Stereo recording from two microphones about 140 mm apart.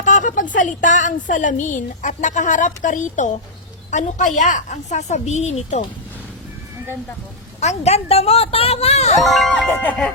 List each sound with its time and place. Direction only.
0.0 s a sound: 65° left (ahead or behind)
0.5 s a woman's voice: 65° left (ahead or behind)
7.6 s speech: 50° left (ahead or behind)
9.2 s music: centre (ahead or behind)